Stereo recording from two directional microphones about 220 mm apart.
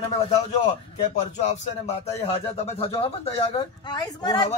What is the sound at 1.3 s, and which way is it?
Speech, 30° left (ahead or behind).